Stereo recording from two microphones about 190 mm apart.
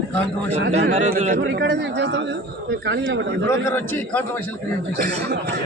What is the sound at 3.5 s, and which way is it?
Speech, 15° left (ahead or behind).